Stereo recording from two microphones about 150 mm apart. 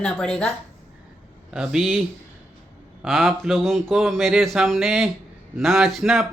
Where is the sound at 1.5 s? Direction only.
5° right (ahead or behind).